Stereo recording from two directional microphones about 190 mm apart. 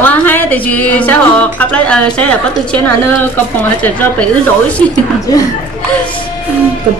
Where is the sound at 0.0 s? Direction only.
10° left (ahead or behind).